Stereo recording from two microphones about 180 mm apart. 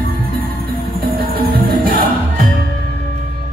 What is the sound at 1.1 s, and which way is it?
Music, 55° right (ahead or behind).